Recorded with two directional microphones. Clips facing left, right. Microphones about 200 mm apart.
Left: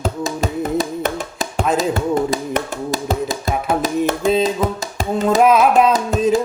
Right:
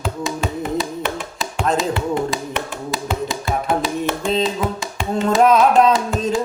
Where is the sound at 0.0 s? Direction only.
40° left (ahead or behind).